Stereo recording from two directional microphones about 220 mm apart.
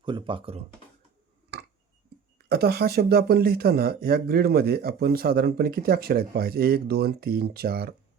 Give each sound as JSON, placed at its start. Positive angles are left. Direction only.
{"t": 0.0, "sound": "speech", "side_deg": -20}
{"t": 1.5, "sound": "tick", "side_deg": -50}
{"t": 2.5, "sound": "speech", "side_deg": -45}